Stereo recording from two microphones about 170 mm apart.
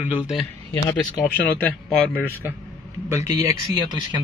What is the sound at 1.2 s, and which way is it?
Speech, 10° left (ahead or behind).